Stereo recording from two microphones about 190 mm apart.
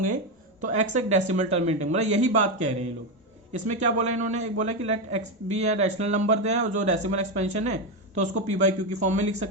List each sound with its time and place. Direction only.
0.6 s speech: 40° right (ahead or behind)